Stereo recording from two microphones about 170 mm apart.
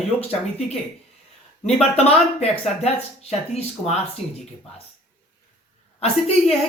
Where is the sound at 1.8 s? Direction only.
35° left (ahead or behind).